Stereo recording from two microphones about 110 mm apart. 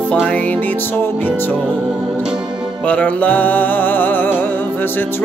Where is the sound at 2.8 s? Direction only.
10° left (ahead or behind).